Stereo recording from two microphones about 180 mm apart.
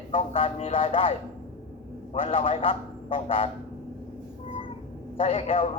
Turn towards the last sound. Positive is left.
turn(degrees=30)  # may be behind; listen again after turning